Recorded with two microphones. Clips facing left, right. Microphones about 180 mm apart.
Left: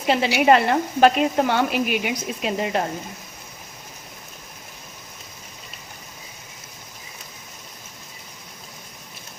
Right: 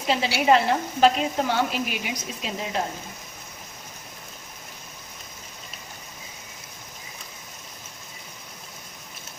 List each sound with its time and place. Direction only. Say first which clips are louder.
0.1 s speech: left 3 dB; 60° left (ahead or behind)